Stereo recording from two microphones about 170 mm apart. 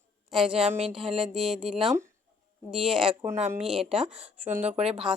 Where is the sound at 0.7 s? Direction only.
40° right (ahead or behind).